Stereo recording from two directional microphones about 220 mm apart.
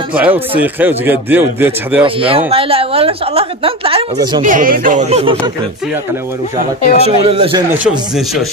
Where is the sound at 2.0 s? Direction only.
25° right (ahead or behind).